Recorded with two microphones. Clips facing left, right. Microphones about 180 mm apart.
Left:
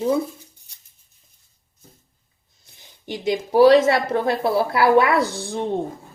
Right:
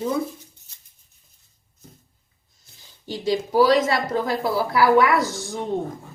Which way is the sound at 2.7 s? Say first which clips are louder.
Left 1 dB; 20° left (ahead or behind).